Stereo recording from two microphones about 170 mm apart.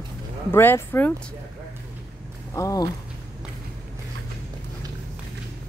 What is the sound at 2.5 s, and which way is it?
Speech, 20° left (ahead or behind).